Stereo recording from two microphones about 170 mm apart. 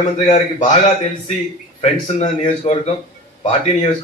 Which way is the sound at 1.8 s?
40° left (ahead or behind).